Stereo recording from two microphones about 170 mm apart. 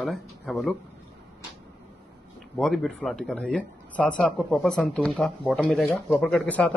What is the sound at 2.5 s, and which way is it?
A man's voice, centre (ahead or behind).